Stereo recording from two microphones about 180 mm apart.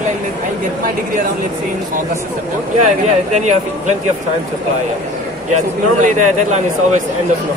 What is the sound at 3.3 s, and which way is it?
Speech, 40° right (ahead or behind).